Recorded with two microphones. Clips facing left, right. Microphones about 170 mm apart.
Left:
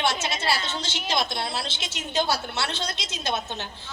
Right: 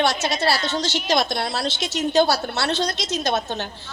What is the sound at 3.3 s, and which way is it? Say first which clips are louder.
Speech: right 7 dB; 90° right.